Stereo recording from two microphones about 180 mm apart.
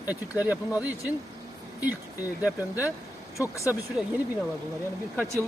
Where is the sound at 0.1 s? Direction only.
10° right (ahead or behind).